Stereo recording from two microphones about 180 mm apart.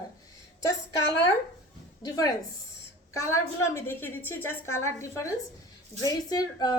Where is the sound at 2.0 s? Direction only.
20° left (ahead or behind).